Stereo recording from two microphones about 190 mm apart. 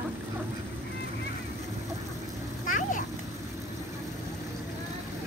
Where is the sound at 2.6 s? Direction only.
45° left (ahead or behind).